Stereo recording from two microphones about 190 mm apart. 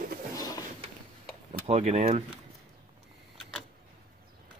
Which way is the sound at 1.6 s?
35° right (ahead or behind).